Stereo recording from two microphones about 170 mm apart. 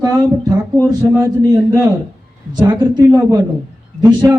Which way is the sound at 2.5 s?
25° right (ahead or behind).